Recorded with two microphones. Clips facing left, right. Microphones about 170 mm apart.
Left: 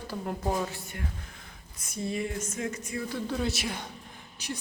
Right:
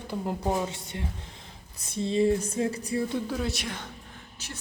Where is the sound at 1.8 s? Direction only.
25° right (ahead or behind).